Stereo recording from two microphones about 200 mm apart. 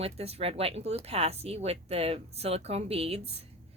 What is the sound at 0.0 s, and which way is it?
A woman's voice, 30° right (ahead or behind).